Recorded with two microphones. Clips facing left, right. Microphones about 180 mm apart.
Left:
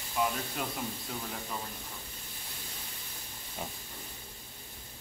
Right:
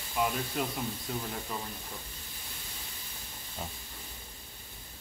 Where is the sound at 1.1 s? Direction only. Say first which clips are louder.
Right 4 dB; centre (ahead or behind).